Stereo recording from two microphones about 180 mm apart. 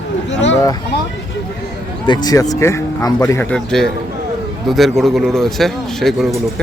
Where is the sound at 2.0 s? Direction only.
25° left (ahead or behind); by 6.3 s centre (ahead or behind).